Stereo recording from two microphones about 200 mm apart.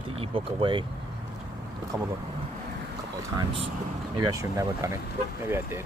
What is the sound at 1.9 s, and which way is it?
Speech, 10° right (ahead or behind).